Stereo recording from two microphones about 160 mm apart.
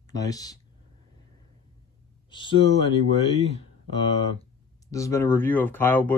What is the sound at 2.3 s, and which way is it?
Speech, 30° left (ahead or behind).